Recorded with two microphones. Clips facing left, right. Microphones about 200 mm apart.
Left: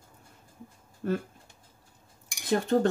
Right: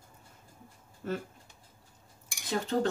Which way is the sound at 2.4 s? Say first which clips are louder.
Left 5 dB; 55° left (ahead or behind).